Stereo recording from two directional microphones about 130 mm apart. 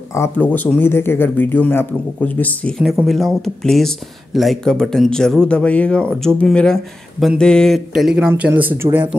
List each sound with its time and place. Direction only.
0.1 s speech: 20° left (ahead or behind)
2.8 s speech: 5° right (ahead or behind)
8.3 s speech: 15° right (ahead or behind)